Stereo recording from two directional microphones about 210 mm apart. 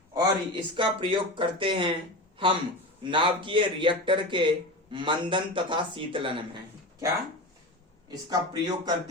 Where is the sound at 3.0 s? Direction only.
25° right (ahead or behind).